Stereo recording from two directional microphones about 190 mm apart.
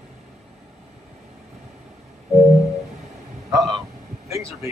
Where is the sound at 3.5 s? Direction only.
20° right (ahead or behind).